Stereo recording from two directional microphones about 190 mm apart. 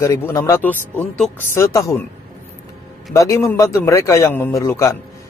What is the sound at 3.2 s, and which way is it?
A man's voice, 15° left (ahead or behind).